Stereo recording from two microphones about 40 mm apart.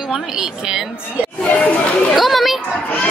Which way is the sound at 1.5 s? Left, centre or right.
Left.